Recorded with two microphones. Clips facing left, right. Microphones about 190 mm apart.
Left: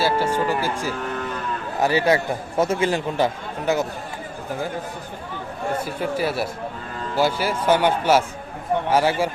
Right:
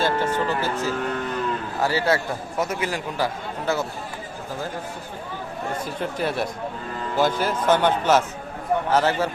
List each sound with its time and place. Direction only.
0.0 s speech: 10° left (ahead or behind)
2.6 s speech: 25° left (ahead or behind)
5.8 s speech: 5° left (ahead or behind)